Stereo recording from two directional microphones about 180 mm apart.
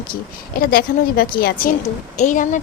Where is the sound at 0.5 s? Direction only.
55° left (ahead or behind).